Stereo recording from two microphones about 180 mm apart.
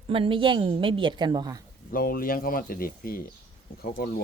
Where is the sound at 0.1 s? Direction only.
30° right (ahead or behind).